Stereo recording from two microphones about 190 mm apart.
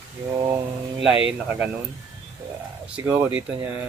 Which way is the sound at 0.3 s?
15° right (ahead or behind).